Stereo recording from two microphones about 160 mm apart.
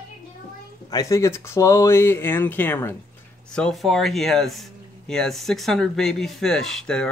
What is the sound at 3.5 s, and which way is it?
Speech, 5° left (ahead or behind).